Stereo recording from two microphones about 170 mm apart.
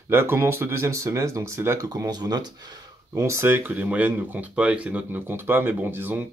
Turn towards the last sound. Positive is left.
turn(degrees=-10)  # may be behind; listen again after turning